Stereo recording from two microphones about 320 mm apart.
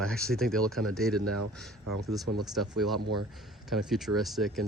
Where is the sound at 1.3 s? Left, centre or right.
Right.